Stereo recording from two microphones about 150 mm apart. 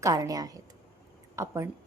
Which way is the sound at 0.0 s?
25° right (ahead or behind).